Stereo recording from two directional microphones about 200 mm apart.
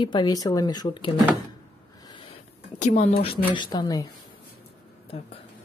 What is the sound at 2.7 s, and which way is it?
Speech, 35° left (ahead or behind).